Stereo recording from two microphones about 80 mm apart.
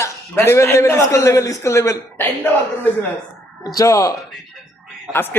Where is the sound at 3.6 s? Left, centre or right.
Left.